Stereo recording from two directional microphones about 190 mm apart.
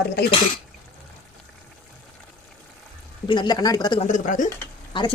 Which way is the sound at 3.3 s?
20° left (ahead or behind).